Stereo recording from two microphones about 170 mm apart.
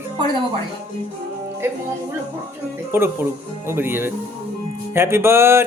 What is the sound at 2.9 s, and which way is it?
Speech, 15° right (ahead or behind).